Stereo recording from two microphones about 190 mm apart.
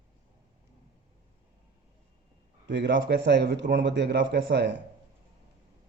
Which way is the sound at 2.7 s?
70° right (ahead or behind).